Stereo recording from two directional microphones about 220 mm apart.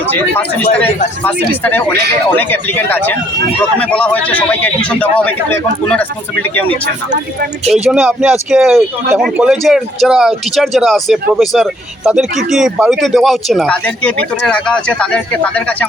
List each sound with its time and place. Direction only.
0.0 s a man's voice: 10° left (ahead or behind)
7.7 s speech: centre (ahead or behind)